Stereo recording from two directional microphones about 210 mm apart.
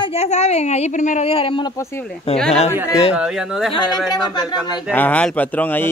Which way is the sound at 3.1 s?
5° right (ahead or behind).